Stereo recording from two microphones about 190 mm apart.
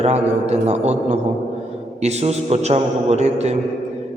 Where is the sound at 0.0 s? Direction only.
35° right (ahead or behind).